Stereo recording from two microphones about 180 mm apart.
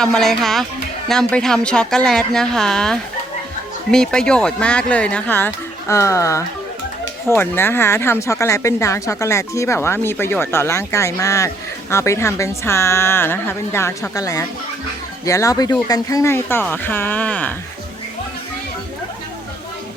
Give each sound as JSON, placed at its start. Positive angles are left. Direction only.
{"t": 0.0, "sound": "a woman's voice", "side_deg": 5}